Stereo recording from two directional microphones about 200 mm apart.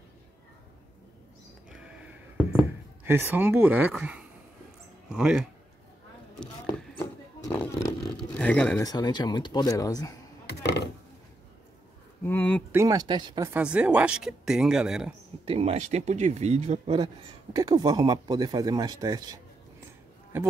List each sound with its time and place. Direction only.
1.7 s a sound: 5° right (ahead or behind)
3.1 s speech: 10° right (ahead or behind)
6.4 s vehicle: 10° left (ahead or behind)
8.8 s speech: 20° left (ahead or behind)
12.2 s a sound: 10° left (ahead or behind)
12.7 s speech: 20° right (ahead or behind)
13.5 s speech: 5° right (ahead or behind)
15.4 s speech: 30° right (ahead or behind)